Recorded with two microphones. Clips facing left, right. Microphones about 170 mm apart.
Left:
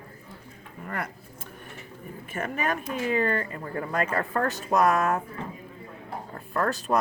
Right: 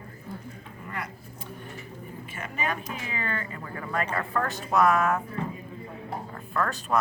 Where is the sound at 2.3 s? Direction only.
50° left (ahead or behind).